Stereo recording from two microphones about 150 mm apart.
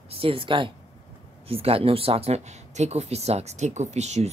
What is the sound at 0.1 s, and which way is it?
Speech, 35° right (ahead or behind).